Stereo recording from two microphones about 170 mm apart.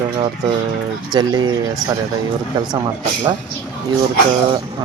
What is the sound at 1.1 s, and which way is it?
Speech, 25° right (ahead or behind).